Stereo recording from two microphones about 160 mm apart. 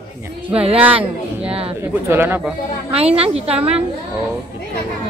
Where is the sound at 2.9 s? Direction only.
40° right (ahead or behind).